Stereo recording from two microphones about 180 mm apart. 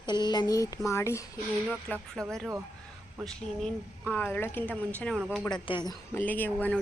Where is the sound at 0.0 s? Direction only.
25° left (ahead or behind).